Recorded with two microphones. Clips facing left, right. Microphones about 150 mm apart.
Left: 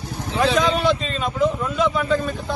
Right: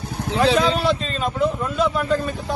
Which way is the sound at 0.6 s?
Centre (ahead or behind).